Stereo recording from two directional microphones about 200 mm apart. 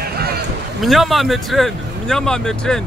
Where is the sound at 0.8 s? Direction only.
Centre (ahead or behind).